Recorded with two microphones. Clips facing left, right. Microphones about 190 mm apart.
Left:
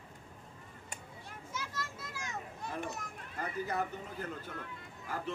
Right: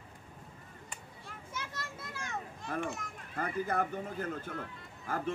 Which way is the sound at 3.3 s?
50° right (ahead or behind).